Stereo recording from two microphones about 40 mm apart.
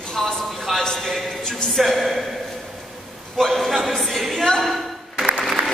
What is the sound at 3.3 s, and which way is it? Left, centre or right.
A man's voice, centre.